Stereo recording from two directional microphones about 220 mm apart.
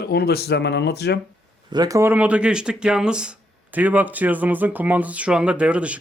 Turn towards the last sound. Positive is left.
turn(degrees=-5)  # may be behind; listen again after turning